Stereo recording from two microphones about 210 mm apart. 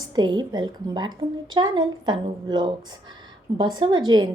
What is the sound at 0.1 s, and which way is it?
A woman's voice, 20° right (ahead or behind).